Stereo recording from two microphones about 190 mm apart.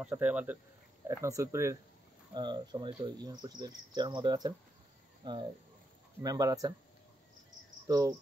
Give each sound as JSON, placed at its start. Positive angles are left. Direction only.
{"t": 0.1, "sound": "speech", "side_deg": -10}
{"t": 7.9, "sound": "speech", "side_deg": -20}